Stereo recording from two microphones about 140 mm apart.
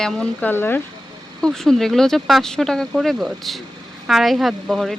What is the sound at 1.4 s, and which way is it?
Speech, 5° left (ahead or behind).